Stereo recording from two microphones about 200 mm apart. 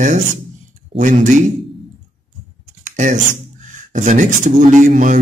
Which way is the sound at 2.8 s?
40° right (ahead or behind).